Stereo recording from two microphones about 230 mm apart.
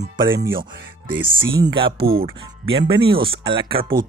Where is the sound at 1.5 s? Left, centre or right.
Centre.